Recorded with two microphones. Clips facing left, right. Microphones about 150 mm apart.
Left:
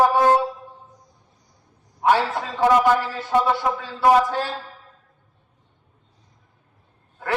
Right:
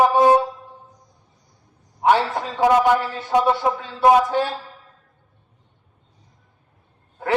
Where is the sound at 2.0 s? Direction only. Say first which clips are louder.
Right 1 dB; 15° right (ahead or behind).